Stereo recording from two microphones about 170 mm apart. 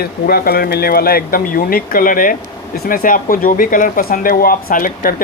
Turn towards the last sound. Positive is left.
turn(degrees=55)  # may be behind; listen again after turning